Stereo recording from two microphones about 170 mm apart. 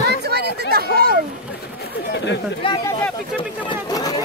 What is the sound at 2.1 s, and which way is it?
Speech, 90° left.